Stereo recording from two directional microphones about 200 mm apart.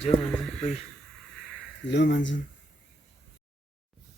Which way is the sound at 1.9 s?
60° left (ahead or behind).